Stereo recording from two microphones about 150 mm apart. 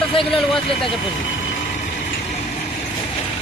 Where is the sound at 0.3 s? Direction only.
Centre (ahead or behind).